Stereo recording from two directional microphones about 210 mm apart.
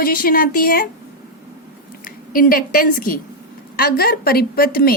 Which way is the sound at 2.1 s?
40° left (ahead or behind).